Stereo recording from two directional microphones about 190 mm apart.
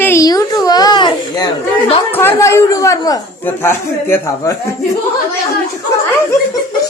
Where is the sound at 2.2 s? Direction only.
15° left (ahead or behind).